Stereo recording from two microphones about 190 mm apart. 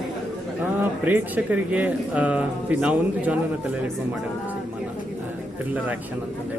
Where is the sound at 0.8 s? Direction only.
10° right (ahead or behind).